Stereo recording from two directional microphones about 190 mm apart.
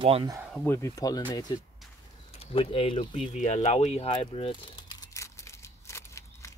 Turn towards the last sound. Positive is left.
turn(degrees=15)  # may be behind; listen again after turning